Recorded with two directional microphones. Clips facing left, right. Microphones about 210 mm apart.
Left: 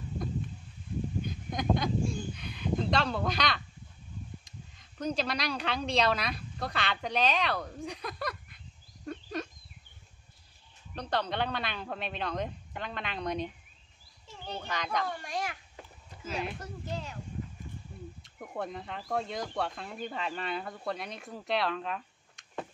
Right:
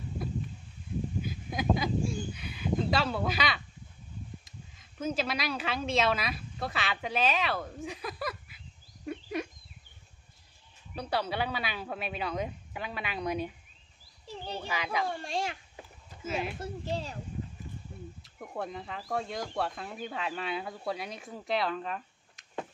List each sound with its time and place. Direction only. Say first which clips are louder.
1.2 s a sound: right 1 dB; 5° right (ahead or behind)
4.5 s a woman's voice: even; 5° right (ahead or behind)
11.0 s speech: even; 10° right (ahead or behind)
14.2 s a sound: right 2 dB; 35° right (ahead or behind)
14.6 s speech: even; 5° right (ahead or behind)
15.0 s a child's voice: right 2 dB; 25° right (ahead or behind)
16.3 s speech: right 2 dB; 5° right (ahead or behind)
16.9 s speech: right 3 dB; 35° right (ahead or behind)
18.2 s speech: even; centre (ahead or behind)